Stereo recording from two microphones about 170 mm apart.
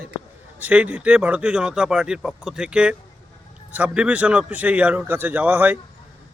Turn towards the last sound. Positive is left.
turn(degrees=-10)  # may be behind; listen again after turning